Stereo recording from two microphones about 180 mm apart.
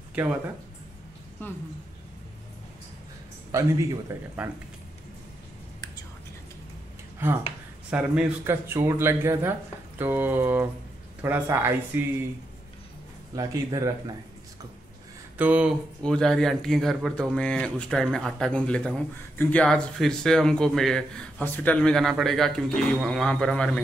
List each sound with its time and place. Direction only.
0.1 s speech: 10° right (ahead or behind)
1.4 s a woman's voice: 10° left (ahead or behind)
3.5 s speech: 15° right (ahead or behind)
7.9 s speech: 10° right (ahead or behind)
13.3 s speech: 20° right (ahead or behind)
15.3 s speech: 10° right (ahead or behind)
16.0 s speech: 5° left (ahead or behind)